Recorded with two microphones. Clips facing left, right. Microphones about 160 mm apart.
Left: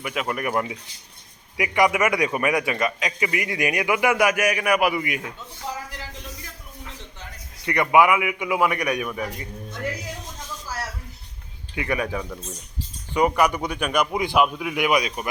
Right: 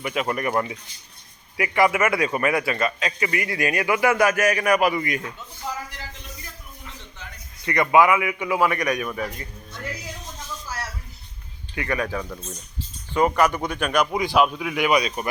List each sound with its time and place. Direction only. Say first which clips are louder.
0.0 s a man's voice: right 2 dB; 5° left (ahead or behind)
7.6 s a man's voice: even; 15° left (ahead or behind)
11.7 s a man's voice: even; 15° left (ahead or behind)